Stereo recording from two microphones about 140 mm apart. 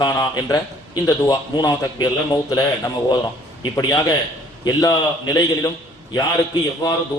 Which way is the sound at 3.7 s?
25° left (ahead or behind).